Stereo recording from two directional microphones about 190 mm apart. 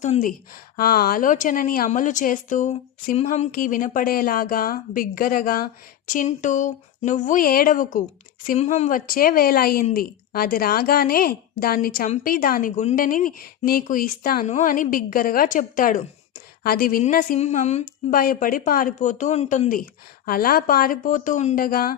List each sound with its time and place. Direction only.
0.0 s speech: 40° left (ahead or behind)